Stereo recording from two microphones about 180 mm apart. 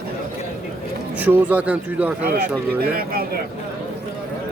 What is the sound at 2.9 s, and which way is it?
Speech, 55° right (ahead or behind).